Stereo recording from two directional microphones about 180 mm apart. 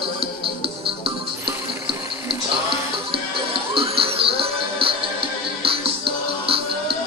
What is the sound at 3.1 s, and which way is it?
Music, 30° right (ahead or behind).